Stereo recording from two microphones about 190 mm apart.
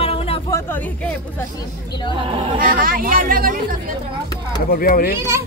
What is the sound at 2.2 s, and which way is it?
Speech, 30° right (ahead or behind).